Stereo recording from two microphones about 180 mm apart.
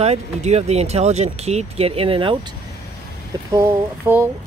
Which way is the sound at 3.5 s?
15° right (ahead or behind).